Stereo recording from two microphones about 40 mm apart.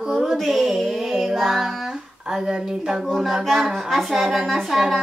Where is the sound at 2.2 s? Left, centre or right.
Centre.